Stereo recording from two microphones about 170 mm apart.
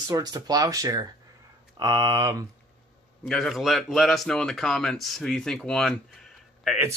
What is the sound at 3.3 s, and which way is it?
Speech, centre (ahead or behind).